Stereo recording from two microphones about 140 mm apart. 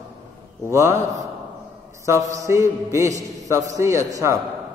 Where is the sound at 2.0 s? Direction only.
25° right (ahead or behind).